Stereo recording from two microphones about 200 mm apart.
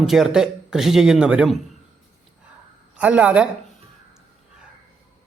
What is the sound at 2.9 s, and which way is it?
Speech, 5° right (ahead or behind).